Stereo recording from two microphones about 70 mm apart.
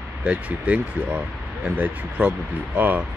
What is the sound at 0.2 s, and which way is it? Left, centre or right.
Speech, centre.